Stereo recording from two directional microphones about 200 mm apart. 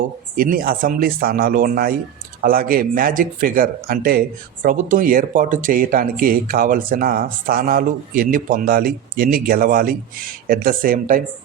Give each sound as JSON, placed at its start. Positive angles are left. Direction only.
{"t": 0.3, "sound": "speech", "side_deg": -45}